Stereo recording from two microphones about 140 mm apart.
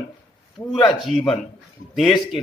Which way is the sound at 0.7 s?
35° left (ahead or behind).